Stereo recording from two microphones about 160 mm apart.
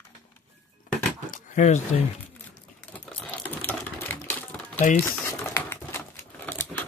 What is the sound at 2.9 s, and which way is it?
Typewriter, 10° left (ahead or behind).